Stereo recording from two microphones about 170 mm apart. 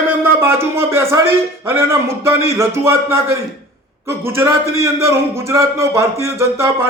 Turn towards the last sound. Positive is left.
turn(degrees=-15)  # may be behind; listen again after turning